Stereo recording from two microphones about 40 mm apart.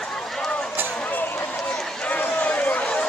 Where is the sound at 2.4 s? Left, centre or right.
Left.